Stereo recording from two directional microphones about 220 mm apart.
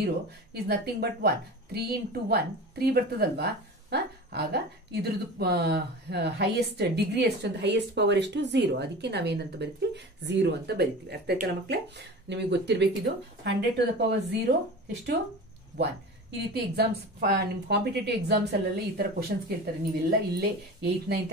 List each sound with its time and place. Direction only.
0.0 s speech: 45° right (ahead or behind)
16.7 s speech: 45° right (ahead or behind)